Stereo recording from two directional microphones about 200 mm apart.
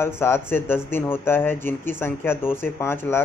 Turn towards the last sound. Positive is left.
turn(degrees=10)  # may be behind; listen again after turning